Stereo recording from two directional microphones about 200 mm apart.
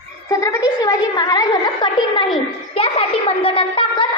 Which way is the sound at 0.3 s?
15° left (ahead or behind).